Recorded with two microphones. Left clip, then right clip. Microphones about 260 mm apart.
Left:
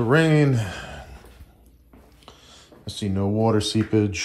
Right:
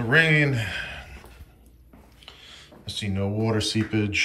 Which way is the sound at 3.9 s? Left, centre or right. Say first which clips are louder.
Left 2 dB; left.